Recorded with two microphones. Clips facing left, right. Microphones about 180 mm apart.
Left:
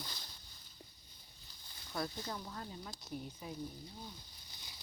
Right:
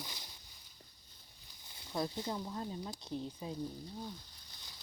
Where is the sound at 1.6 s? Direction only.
20° right (ahead or behind).